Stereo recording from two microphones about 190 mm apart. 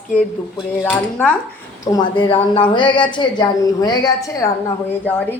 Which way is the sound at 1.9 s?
25° left (ahead or behind).